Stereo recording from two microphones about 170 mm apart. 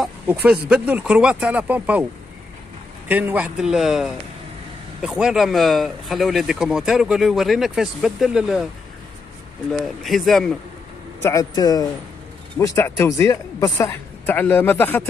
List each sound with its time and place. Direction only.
0.0 s a sound: 10° right (ahead or behind)
0.7 s speech: 5° right (ahead or behind)
3.1 s speech: 10° right (ahead or behind)
9.7 s speech: centre (ahead or behind)
11.1 s a woman's voice: 15° left (ahead or behind)